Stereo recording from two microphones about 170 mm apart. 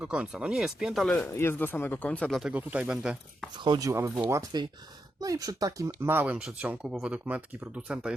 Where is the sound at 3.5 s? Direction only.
25° right (ahead or behind); by 8.1 s 5° right (ahead or behind).